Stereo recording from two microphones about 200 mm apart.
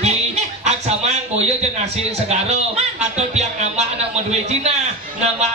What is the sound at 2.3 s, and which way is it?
A man's voice, 30° right (ahead or behind).